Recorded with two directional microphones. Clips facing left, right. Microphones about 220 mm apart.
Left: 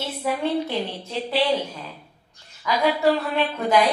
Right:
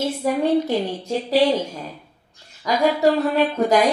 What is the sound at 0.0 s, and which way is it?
A woman's voice, 45° right (ahead or behind).